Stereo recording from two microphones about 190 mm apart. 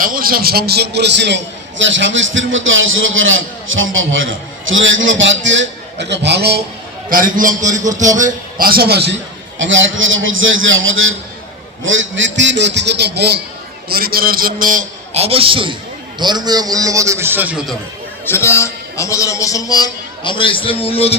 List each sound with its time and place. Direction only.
0.0 s a man's voice: 50° right (ahead or behind)
7.1 s a man's voice: 45° right (ahead or behind)
9.6 s a man's voice: 80° right; by 17.6 s 10° right (ahead or behind)
18.3 s a man's voice: 15° left (ahead or behind); by 21.2 s 30° left (ahead or behind)